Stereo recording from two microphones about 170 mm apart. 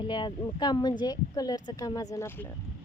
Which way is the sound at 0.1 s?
25° left (ahead or behind).